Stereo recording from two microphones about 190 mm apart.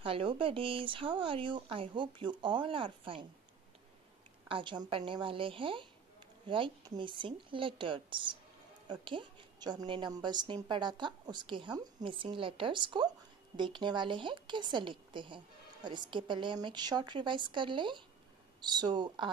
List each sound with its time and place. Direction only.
0.0 s a woman's voice: 30° right (ahead or behind)
4.5 s a woman's voice: 25° right (ahead or behind)